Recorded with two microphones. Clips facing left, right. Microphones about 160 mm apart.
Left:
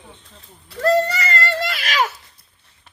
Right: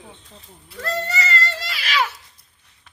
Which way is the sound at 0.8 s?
45° left (ahead or behind).